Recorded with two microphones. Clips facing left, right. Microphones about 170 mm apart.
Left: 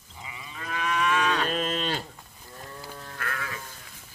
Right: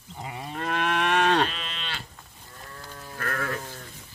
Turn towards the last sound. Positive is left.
turn(degrees=-50)  # may be behind; listen again after turning